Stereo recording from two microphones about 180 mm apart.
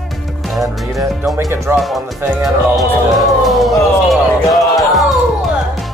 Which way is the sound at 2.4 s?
Centre (ahead or behind).